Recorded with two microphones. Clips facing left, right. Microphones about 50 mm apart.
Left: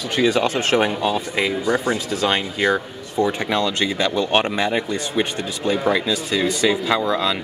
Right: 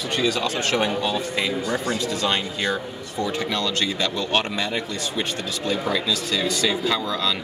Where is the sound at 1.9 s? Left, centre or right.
Centre.